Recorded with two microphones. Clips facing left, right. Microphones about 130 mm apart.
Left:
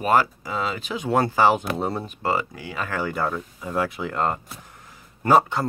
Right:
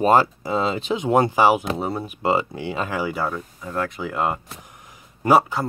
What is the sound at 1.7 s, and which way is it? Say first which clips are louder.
Speech: even; centre (ahead or behind).